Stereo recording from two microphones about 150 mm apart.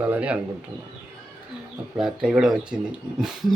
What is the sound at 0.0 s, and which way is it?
Bird, 10° right (ahead or behind).